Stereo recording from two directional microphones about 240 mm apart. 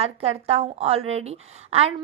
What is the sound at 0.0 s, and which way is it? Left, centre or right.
A woman's voice, right.